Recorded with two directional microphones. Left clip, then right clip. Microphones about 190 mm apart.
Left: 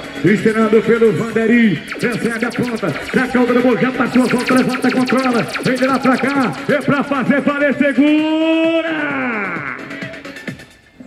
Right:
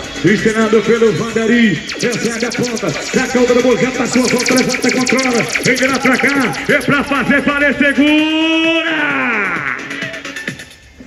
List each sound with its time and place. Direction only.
0.2 s a man's voice: 25° left (ahead or behind)
3.2 s a man's voice: 25° left (ahead or behind); by 9.8 s 50° left (ahead or behind)